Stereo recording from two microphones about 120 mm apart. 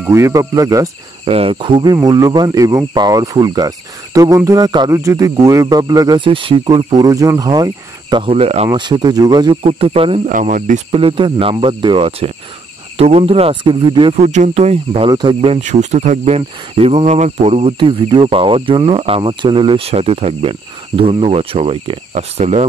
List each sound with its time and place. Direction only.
0.0 s speech: 25° right (ahead or behind)
1.2 s speech: 55° right (ahead or behind); by 8.3 s 40° right (ahead or behind)
8.3 s speech: 60° right (ahead or behind)
8.7 s speech: 40° right (ahead or behind)
9.6 s speech: 55° right (ahead or behind)
10.2 s speech: 90° right
10.9 s speech: 50° right (ahead or behind)
14.1 s speech: 70° right (ahead or behind)
15.0 s speech: 35° right (ahead or behind)
15.6 s speech: 70° right (ahead or behind); by 22.0 s 45° right (ahead or behind)
22.1 s speech: 65° right (ahead or behind)